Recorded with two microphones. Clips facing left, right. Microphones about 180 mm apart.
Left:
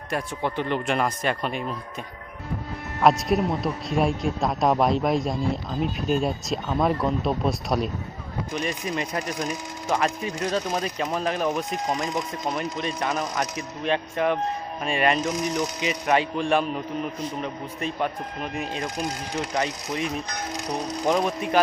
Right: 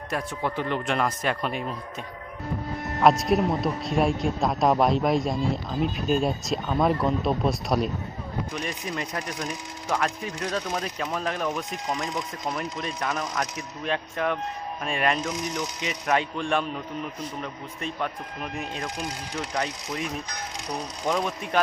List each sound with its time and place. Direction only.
0.1 s a man's voice: centre (ahead or behind)
3.0 s a man's voice: centre (ahead or behind)
11.4 s speech: 35° left (ahead or behind)
12.5 s a man's voice: centre (ahead or behind)